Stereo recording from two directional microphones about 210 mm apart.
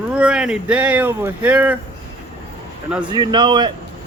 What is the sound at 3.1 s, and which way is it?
Speech, 20° right (ahead or behind).